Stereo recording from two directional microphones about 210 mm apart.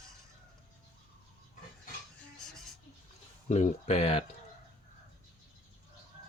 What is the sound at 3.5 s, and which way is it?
Speech, 30° left (ahead or behind).